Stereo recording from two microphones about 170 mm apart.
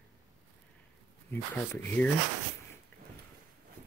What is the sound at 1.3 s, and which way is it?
Speech, 10° left (ahead or behind).